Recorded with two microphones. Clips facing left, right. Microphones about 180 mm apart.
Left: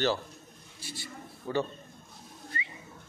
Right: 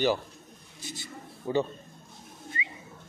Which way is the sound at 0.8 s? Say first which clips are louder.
Right 1 dB; 20° right (ahead or behind).